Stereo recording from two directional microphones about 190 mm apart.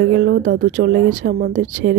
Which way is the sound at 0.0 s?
65° right (ahead or behind).